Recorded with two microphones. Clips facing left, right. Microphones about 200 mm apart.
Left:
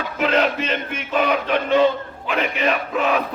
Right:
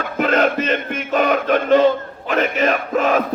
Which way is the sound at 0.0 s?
45° right (ahead or behind).